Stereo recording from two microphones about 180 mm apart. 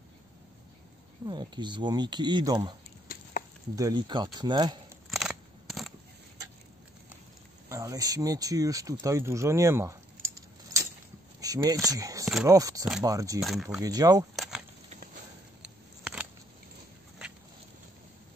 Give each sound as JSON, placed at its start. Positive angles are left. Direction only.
{"t": 1.2, "sound": "speech", "side_deg": -25}
{"t": 3.7, "sound": "speech", "side_deg": -20}
{"t": 5.1, "sound": "scissors", "side_deg": 0}
{"t": 7.7, "sound": "speech", "side_deg": -15}
{"t": 9.0, "sound": "keys jangling", "side_deg": -15}
{"t": 11.4, "sound": "speech", "side_deg": -20}
{"t": 13.4, "sound": "speech", "side_deg": 0}
{"t": 13.7, "sound": "speech", "side_deg": -20}
{"t": 14.3, "sound": "keys jangling", "side_deg": 0}
{"t": 15.6, "sound": "a sound", "side_deg": -5}